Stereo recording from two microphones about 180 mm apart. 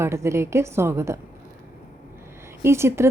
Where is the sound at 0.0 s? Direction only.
15° right (ahead or behind).